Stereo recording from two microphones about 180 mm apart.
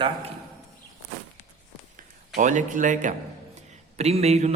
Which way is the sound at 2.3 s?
45° right (ahead or behind).